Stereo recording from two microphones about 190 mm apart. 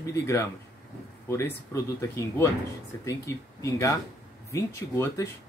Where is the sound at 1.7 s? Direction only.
15° left (ahead or behind).